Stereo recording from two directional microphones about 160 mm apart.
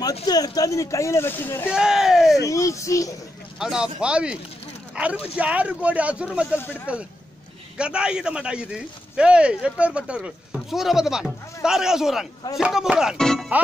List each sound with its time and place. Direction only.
0.3 s speech: 25° left (ahead or behind)
1.7 s a man's voice: 5° right (ahead or behind)
2.4 s speech: 20° left (ahead or behind)
3.5 s a man's voice: 5° right (ahead or behind)
6.5 s speech: 15° left (ahead or behind)
7.7 s a man's voice: 5° right (ahead or behind)